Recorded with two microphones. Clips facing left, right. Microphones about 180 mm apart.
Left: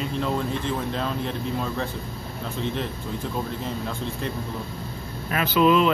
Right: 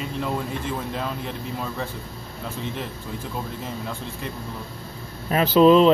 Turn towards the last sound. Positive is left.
turn(degrees=-35)  # may be behind; listen again after turning